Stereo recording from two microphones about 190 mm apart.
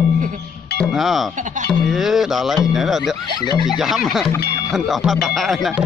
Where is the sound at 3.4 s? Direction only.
20° left (ahead or behind).